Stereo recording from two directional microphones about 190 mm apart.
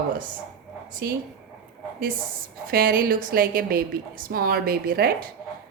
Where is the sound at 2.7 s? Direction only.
50° right (ahead or behind).